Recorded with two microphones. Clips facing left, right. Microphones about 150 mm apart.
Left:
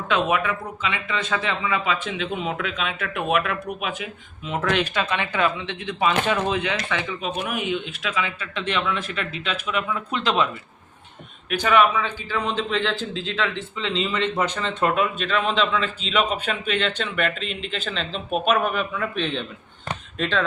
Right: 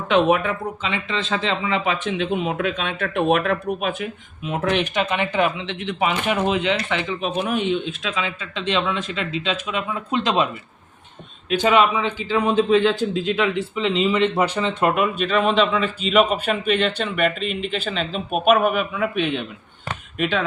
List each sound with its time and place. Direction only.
0.1 s speech: 30° right (ahead or behind)
4.4 s speech: 20° right (ahead or behind)
11.6 s a man's voice: 20° right (ahead or behind)